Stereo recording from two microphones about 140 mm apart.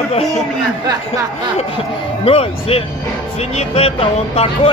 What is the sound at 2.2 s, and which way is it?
Speech, 45° left (ahead or behind).